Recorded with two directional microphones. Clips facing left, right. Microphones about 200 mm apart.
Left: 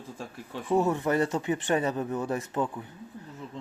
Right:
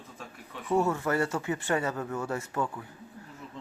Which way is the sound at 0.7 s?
15° left (ahead or behind).